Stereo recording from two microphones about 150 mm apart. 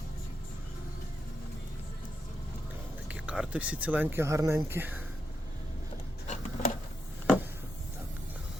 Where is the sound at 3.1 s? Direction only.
10° right (ahead or behind).